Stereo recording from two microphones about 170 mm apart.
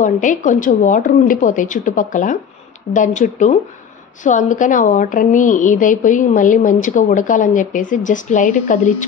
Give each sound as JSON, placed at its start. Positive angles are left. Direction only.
{"t": 0.0, "sound": "a woman's voice", "side_deg": 50}